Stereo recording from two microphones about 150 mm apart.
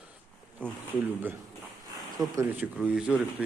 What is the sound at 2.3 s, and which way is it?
Speech, 10° right (ahead or behind).